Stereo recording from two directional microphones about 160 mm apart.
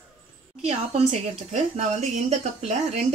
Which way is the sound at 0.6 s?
45° right (ahead or behind).